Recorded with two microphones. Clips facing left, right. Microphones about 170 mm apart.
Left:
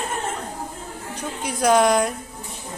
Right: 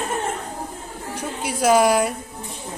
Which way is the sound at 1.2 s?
5° right (ahead or behind).